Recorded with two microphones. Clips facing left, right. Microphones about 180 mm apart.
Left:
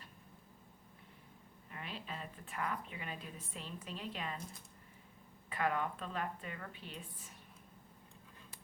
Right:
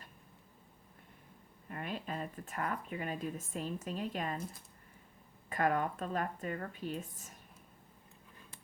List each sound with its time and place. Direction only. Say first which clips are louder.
1.7 s speech: right 6 dB; 50° right (ahead or behind)
5.5 s speech: right 4 dB; 45° right (ahead or behind)